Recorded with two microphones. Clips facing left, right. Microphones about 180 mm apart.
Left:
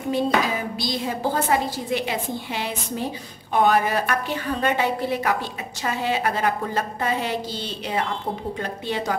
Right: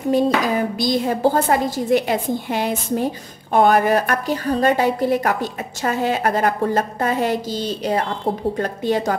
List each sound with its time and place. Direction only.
0.1 s a woman's voice: 45° right (ahead or behind)